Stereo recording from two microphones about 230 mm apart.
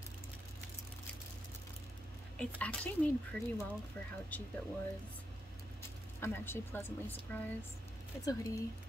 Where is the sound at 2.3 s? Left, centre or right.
Centre.